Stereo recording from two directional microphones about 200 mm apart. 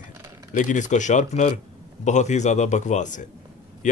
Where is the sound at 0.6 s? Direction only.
40° left (ahead or behind).